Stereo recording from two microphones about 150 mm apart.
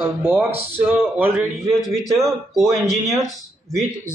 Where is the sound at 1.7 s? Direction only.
Centre (ahead or behind).